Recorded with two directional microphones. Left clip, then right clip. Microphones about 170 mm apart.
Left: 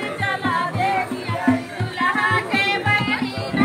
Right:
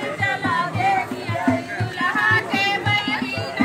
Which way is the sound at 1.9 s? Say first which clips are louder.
Even; 15° right (ahead or behind).